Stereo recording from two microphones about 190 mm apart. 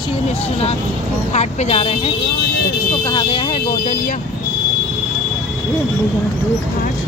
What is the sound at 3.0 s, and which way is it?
Vehicle, 25° left (ahead or behind).